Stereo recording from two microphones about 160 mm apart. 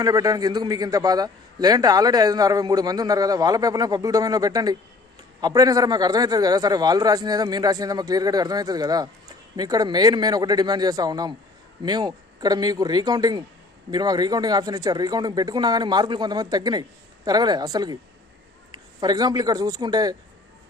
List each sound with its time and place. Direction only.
0.0 s a man's voice: 25° right (ahead or behind)